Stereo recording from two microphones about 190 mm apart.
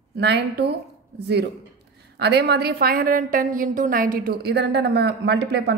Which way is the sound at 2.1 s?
60° right (ahead or behind).